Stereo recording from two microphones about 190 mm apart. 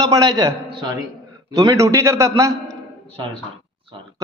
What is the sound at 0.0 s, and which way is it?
A man's voice, 20° right (ahead or behind).